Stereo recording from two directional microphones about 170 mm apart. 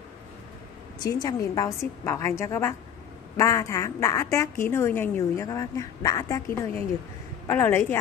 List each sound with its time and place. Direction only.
1.0 s a woman's voice: 20° left (ahead or behind)
7.4 s a woman's voice: 15° left (ahead or behind)